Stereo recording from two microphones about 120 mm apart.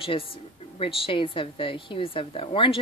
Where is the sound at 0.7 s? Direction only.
50° left (ahead or behind).